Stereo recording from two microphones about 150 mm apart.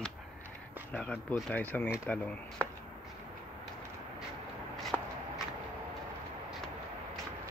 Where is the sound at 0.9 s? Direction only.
5° left (ahead or behind).